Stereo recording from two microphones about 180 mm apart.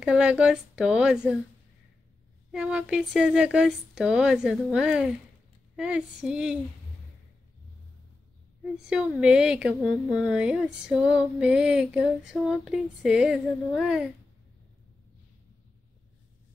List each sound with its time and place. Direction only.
0.0 s speech: 5° right (ahead or behind)
2.5 s speech: 5° right (ahead or behind)
8.8 s speech: 5° right (ahead or behind)